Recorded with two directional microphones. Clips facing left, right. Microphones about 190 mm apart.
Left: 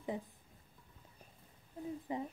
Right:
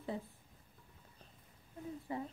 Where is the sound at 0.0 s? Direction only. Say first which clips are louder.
Left 1 dB; 15° left (ahead or behind).